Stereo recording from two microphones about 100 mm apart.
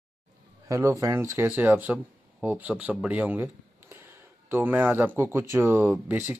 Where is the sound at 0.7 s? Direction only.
30° right (ahead or behind); by 3.4 s 15° right (ahead or behind).